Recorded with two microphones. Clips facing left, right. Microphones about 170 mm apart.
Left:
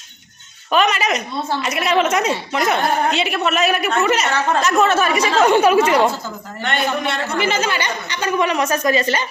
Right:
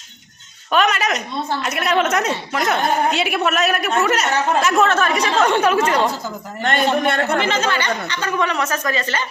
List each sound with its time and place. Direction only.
0.7 s a woman's voice: centre (ahead or behind)
7.0 s a man's voice: 55° right (ahead or behind)
7.4 s a woman's voice: 10° left (ahead or behind)